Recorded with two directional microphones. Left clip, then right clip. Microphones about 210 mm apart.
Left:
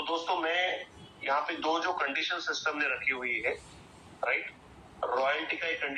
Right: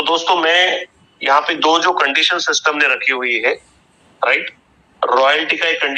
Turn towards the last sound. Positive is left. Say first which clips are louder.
# right 16 dB
turn(degrees=-45)  # may be behind; listen again after turning